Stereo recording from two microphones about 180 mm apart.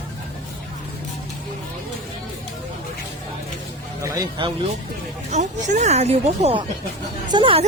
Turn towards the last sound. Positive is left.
turn(degrees=-25)  # may be behind; listen again after turning